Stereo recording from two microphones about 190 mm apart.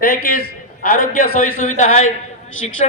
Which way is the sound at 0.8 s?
45° left (ahead or behind).